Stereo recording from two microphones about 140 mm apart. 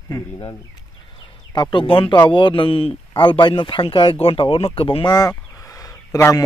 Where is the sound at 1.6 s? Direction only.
35° left (ahead or behind).